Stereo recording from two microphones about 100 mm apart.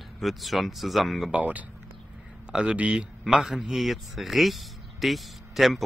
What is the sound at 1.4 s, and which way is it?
Speech, 15° right (ahead or behind).